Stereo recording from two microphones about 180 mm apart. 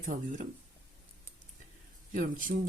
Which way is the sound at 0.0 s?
40° right (ahead or behind).